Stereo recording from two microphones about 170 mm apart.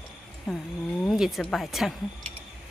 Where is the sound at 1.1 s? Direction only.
Centre (ahead or behind).